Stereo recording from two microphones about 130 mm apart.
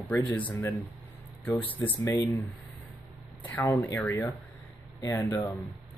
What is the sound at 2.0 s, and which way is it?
Speech, 25° left (ahead or behind).